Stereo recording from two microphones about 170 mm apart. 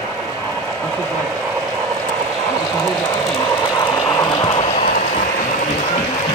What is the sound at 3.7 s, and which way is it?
Ratchet, 20° left (ahead or behind).